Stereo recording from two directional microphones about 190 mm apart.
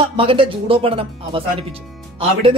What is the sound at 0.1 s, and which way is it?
Speech, 30° right (ahead or behind).